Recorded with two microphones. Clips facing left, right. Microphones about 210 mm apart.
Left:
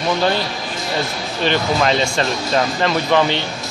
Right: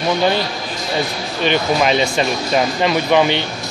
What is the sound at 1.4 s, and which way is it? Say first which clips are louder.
Speech: right 1 dB; 10° right (ahead or behind).